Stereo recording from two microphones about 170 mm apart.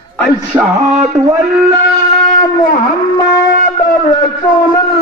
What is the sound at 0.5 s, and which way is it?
Music, 20° right (ahead or behind).